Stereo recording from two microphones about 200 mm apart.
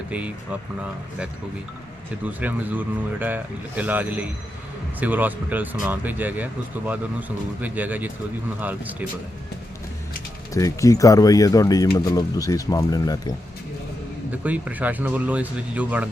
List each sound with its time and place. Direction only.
0.1 s speech: 5° right (ahead or behind)
2.2 s speech: 10° right (ahead or behind)
10.5 s speech: 15° left (ahead or behind)
14.3 s speech: 10° right (ahead or behind)